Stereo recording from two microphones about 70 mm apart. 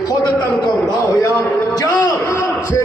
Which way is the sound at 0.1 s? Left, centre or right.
Left.